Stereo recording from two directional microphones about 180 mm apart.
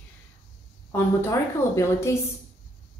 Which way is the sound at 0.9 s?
15° left (ahead or behind).